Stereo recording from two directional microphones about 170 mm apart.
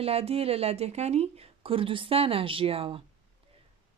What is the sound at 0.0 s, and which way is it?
Speech, 35° right (ahead or behind).